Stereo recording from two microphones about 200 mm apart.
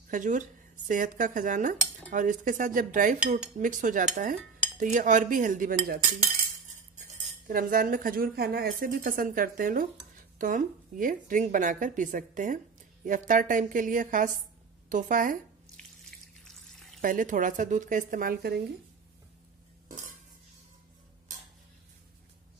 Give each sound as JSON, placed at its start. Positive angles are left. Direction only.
{"t": 0.1, "sound": "cutlery", "side_deg": -40}
{"t": 7.0, "sound": "speech", "side_deg": -45}
{"t": 10.4, "sound": "cutlery", "side_deg": -40}
{"t": 15.7, "sound": "water", "side_deg": 0}
{"t": 17.0, "sound": "cutlery", "side_deg": -40}